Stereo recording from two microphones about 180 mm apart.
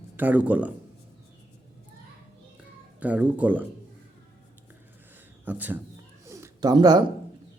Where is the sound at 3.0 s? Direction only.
10° right (ahead or behind).